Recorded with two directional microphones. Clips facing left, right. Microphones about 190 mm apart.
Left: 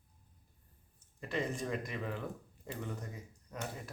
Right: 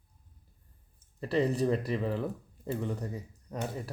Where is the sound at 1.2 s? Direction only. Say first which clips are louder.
Right 9 dB; 35° right (ahead or behind).